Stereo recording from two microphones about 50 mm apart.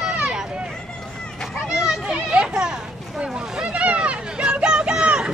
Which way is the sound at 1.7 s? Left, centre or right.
Centre.